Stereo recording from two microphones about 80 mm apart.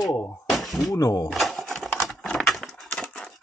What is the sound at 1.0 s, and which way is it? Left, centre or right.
Speech, left.